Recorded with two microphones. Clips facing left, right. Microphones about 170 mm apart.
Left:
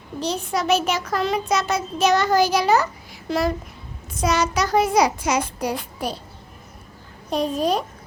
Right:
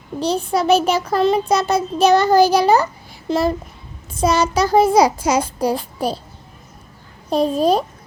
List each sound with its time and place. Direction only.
0.2 s child singing: 30° right (ahead or behind)
3.2 s a child's voice: 25° right (ahead or behind)
4.1 s child singing: 30° right (ahead or behind)
7.3 s child singing: 30° right (ahead or behind)